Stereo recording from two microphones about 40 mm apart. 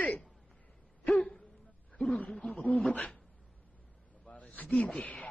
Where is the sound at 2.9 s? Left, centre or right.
Left.